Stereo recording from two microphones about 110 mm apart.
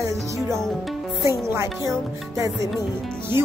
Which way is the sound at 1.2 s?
25° right (ahead or behind).